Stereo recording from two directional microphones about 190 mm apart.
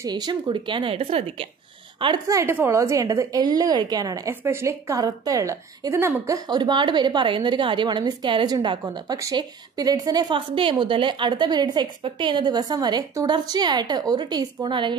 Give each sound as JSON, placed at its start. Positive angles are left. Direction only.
{"t": 0.0, "sound": "a woman's voice", "side_deg": -20}